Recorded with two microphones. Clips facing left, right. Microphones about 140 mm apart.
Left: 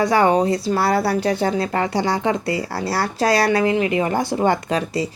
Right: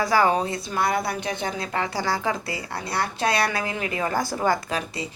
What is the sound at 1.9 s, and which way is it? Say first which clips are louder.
Speech: left 6 dB; 25° left (ahead or behind).